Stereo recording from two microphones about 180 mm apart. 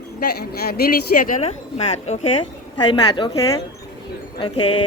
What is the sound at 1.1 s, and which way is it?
Speech, 50° left (ahead or behind).